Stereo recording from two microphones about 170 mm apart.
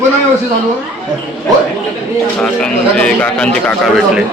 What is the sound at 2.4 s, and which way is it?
Speech, 5° left (ahead or behind).